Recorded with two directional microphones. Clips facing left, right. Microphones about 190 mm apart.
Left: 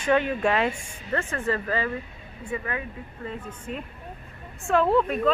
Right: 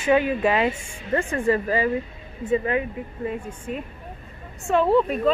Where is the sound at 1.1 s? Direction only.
15° right (ahead or behind).